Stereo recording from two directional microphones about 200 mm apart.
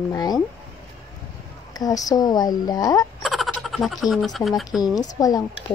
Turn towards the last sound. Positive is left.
turn(degrees=15)  # may be behind; listen again after turning